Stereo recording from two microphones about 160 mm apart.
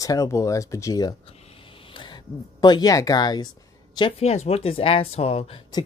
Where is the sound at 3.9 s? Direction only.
35° left (ahead or behind).